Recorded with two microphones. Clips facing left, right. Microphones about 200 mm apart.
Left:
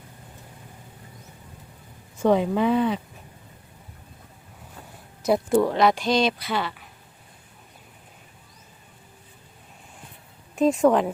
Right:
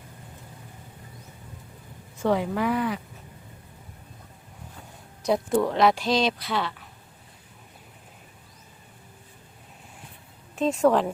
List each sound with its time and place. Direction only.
2.2 s speech: 20° left (ahead or behind)
5.2 s speech: 5° left (ahead or behind)
10.5 s speech: 5° left (ahead or behind)